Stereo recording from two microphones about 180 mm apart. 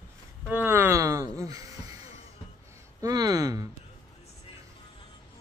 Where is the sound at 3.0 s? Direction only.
20° right (ahead or behind).